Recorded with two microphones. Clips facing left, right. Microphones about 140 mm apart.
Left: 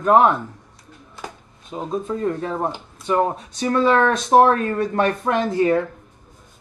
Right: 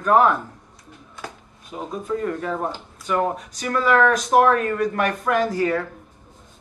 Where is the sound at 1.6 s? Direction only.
25° left (ahead or behind).